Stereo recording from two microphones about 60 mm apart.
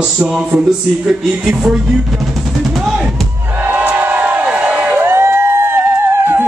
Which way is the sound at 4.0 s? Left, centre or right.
Right.